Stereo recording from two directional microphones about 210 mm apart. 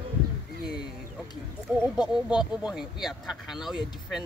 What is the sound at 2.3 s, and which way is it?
Speech, 5° right (ahead or behind).